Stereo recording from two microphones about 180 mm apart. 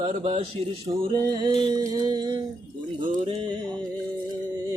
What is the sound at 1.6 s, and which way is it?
Music, 20° right (ahead or behind).